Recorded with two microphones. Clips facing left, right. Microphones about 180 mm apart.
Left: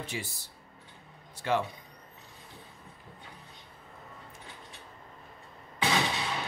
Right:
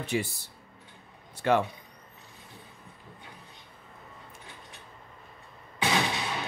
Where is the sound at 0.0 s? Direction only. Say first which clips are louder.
Right 8 dB; 60° right (ahead or behind).